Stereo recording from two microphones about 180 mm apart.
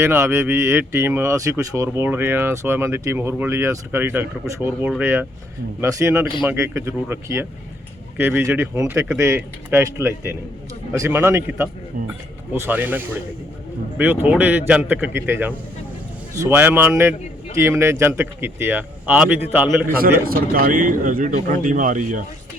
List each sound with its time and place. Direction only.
0.0 s speech: 15° right (ahead or behind)
20.2 s speech: 55° right (ahead or behind)